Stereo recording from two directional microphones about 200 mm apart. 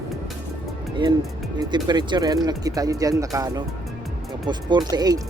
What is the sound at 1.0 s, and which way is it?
Speech, 25° right (ahead or behind).